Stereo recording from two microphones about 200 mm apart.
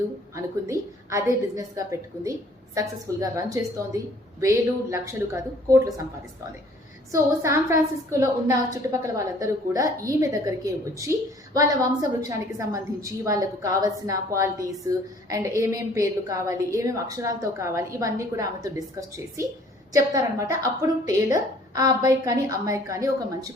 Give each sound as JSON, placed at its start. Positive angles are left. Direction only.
{"t": 0.3, "sound": "a woman's voice", "side_deg": -15}
{"t": 7.1, "sound": "a woman's voice", "side_deg": -15}